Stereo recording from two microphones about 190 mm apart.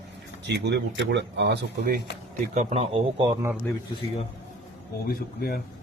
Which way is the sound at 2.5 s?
35° right (ahead or behind).